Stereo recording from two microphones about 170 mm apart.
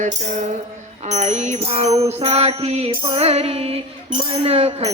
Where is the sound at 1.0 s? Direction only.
45° right (ahead or behind).